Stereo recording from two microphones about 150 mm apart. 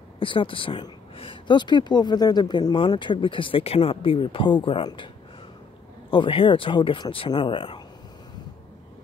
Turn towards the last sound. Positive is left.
turn(degrees=35)  # may be behind; listen again after turning